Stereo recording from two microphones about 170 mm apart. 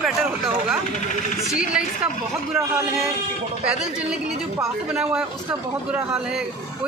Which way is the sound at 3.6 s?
5° right (ahead or behind).